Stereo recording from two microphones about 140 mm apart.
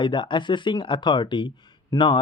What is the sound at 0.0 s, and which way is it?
Speech, 35° left (ahead or behind).